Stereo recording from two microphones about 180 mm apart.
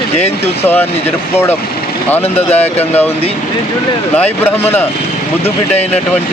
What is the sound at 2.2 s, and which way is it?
Speech, 35° left (ahead or behind).